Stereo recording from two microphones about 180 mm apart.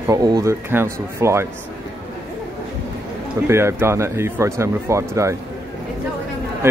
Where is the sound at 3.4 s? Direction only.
15° right (ahead or behind).